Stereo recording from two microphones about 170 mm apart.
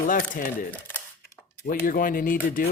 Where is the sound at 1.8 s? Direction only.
55° left (ahead or behind).